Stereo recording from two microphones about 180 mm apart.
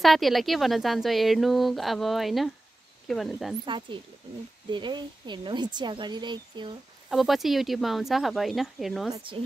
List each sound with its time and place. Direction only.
0.0 s a woman's voice: centre (ahead or behind)
3.6 s speech: 25° right (ahead or behind)
7.1 s a woman's voice: centre (ahead or behind)
9.1 s speech: 30° right (ahead or behind)